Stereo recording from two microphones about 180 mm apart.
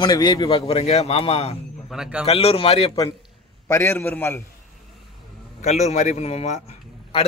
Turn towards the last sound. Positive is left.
turn(degrees=35)  # may be behind; listen again after turning